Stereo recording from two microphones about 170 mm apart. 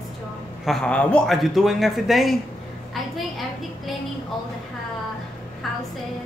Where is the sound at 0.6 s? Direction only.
5° left (ahead or behind).